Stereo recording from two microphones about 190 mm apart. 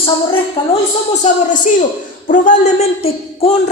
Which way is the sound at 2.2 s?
45° left (ahead or behind).